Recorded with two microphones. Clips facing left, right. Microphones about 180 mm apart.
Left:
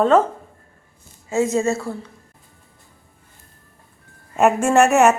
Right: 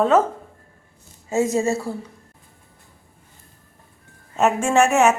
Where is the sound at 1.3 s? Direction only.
40° right (ahead or behind).